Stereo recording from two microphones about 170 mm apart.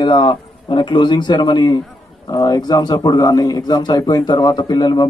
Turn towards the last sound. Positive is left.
turn(degrees=25)  # may be behind; listen again after turning